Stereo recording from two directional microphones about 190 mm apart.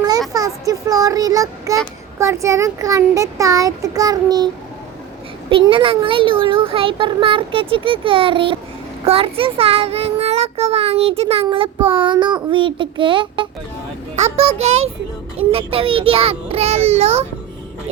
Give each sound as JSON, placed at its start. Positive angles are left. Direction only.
{"t": 0.3, "sound": "child singing", "side_deg": -15}
{"t": 2.1, "sound": "a child's voice", "side_deg": -15}
{"t": 5.5, "sound": "a child's voice", "side_deg": -25}